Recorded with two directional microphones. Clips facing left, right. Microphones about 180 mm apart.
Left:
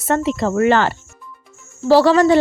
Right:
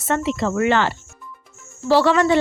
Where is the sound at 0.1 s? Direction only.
40° left (ahead or behind).